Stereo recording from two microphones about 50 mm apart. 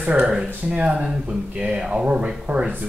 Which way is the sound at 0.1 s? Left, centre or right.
Right.